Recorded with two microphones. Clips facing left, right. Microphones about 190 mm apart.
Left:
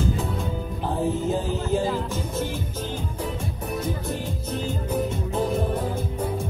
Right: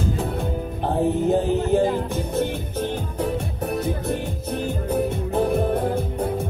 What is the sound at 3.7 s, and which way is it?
Music, 60° right (ahead or behind).